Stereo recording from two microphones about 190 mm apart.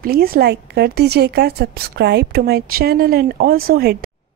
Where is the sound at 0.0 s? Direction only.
50° right (ahead or behind).